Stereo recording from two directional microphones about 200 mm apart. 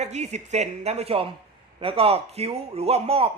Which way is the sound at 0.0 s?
35° right (ahead or behind).